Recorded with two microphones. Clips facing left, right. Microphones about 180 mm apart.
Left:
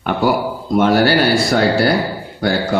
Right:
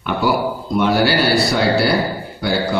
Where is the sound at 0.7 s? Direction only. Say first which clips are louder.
Left 3 dB; 45° left (ahead or behind).